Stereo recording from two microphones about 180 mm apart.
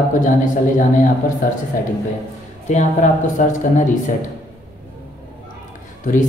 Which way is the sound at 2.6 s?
45° left (ahead or behind).